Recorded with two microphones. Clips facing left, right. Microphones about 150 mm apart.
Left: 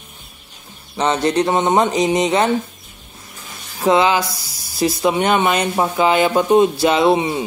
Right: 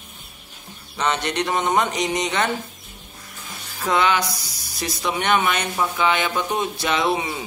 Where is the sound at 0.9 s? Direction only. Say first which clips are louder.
Left 7 dB; 30° left (ahead or behind).